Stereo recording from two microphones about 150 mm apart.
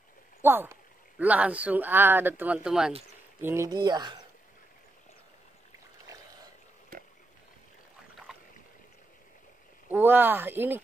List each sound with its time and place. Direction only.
0.4 s speech: 15° right (ahead or behind)
3.3 s speech: 15° right (ahead or behind)
9.8 s speech: 15° right (ahead or behind)